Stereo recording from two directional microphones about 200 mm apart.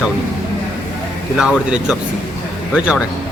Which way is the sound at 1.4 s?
5° right (ahead or behind).